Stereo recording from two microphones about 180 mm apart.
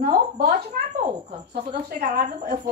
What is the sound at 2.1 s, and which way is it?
Speech, 60° right (ahead or behind).